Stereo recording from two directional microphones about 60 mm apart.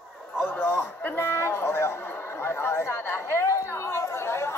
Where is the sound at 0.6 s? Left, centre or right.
Left.